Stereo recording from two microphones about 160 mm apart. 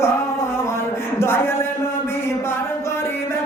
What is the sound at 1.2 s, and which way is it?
Speech, 15° left (ahead or behind).